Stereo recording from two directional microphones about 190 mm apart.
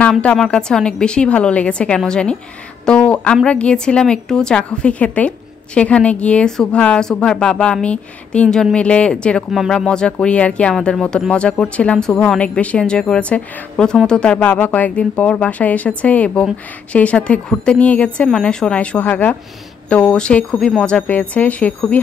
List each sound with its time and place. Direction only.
0.0 s a woman's voice: 5° left (ahead or behind)